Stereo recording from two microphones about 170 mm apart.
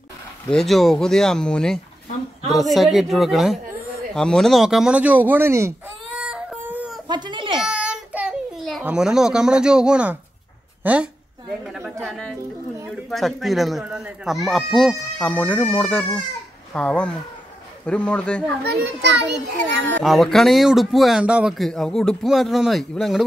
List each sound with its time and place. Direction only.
0.5 s speech: centre (ahead or behind); by 5.9 s 15° right (ahead or behind)
6.1 s whimper: 5° right (ahead or behind)
7.1 s a sound: 25° right (ahead or behind)
7.6 s a sound: 5° right (ahead or behind)
10.8 s a woman's voice: 10° right (ahead or behind)
11.6 s chatter: centre (ahead or behind)
12.0 s a sound: 5° left (ahead or behind)
12.9 s speech: centre (ahead or behind)
18.9 s a child's voice: 90° right
20.0 s speech: centre (ahead or behind)